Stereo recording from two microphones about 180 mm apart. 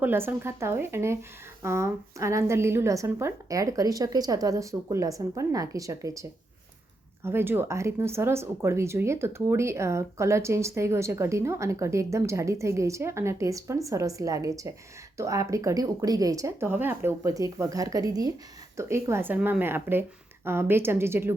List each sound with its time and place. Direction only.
0.0 s speech: 10° right (ahead or behind)